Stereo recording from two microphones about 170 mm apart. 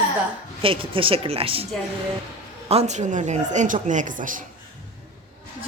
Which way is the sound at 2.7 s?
40° right (ahead or behind).